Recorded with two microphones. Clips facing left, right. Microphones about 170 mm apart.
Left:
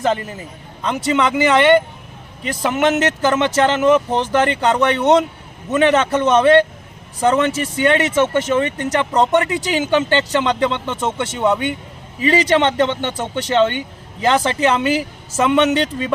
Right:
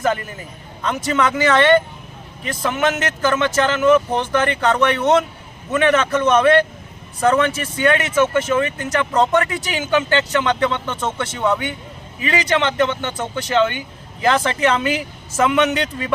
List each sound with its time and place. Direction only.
0.0 s a man's voice: 25° left (ahead or behind)